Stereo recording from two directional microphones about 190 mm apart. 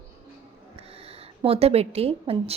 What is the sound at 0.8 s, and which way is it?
A woman's voice, 30° right (ahead or behind).